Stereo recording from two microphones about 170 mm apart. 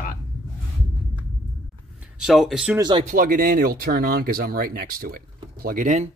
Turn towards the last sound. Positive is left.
turn(degrees=-50)  # may be behind; listen again after turning